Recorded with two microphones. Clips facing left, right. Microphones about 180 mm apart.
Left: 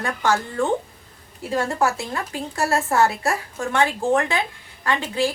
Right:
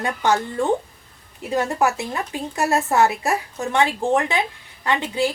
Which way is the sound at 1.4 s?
20° right (ahead or behind).